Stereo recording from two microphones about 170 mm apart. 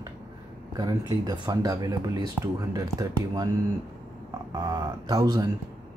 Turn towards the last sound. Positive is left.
turn(degrees=-20)  # may be behind; listen again after turning